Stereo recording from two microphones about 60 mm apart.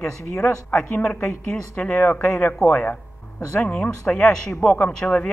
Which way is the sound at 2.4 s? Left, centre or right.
Left.